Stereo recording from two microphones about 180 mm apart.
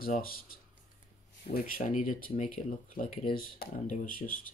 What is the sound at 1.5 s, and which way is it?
Speech, 50° left (ahead or behind).